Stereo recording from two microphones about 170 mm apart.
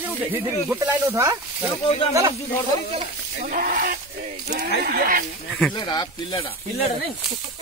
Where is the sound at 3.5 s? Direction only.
55° right (ahead or behind).